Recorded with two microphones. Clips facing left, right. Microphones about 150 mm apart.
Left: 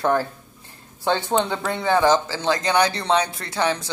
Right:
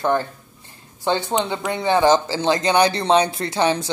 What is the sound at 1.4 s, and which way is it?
Speech, 15° right (ahead or behind).